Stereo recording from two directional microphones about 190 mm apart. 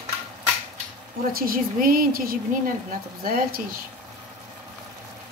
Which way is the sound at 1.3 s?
50° right (ahead or behind).